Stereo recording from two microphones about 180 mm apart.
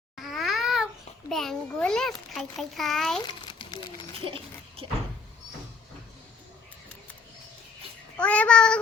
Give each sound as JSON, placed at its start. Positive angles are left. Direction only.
{"t": 0.2, "sound": "babbling", "side_deg": 0}
{"t": 1.3, "sound": "a child's voice", "side_deg": 0}
{"t": 3.4, "sound": "a sound", "side_deg": 30}
{"t": 4.3, "sound": "speech", "side_deg": -30}
{"t": 8.1, "sound": "a child's voice", "side_deg": 5}